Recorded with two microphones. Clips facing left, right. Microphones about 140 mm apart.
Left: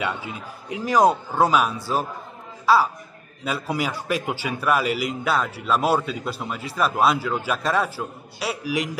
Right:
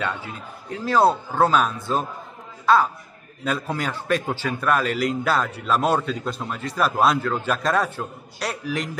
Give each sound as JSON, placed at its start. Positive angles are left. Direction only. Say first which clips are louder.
{"t": 0.0, "sound": "a man's voice", "louder": "left 1 dB", "side_deg": 15}